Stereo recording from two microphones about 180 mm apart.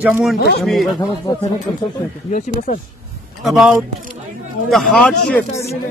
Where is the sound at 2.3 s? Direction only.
45° left (ahead or behind).